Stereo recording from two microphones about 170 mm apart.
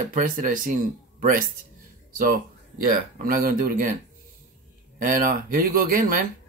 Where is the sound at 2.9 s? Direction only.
60° right (ahead or behind).